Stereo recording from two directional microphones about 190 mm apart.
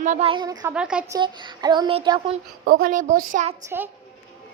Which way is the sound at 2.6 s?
50° right (ahead or behind).